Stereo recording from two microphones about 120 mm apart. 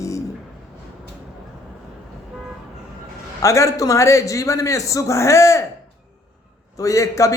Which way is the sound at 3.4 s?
25° left (ahead or behind).